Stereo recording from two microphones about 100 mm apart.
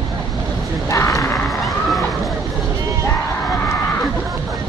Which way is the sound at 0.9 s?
30° left (ahead or behind).